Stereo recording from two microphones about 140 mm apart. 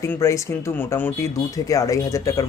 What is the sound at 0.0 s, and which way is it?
Speech, 20° left (ahead or behind).